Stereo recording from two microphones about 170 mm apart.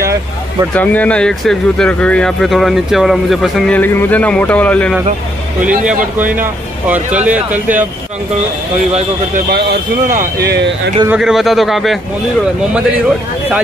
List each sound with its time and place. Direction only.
0.7 s speech: 10° left (ahead or behind)
6.1 s speech: 10° right (ahead or behind)
9.5 s speech: 60° right (ahead or behind)
10.4 s speech: 75° right (ahead or behind)
11.1 s a man's voice: 5° right (ahead or behind)